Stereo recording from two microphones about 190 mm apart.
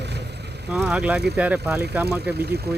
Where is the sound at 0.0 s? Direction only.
60° right (ahead or behind).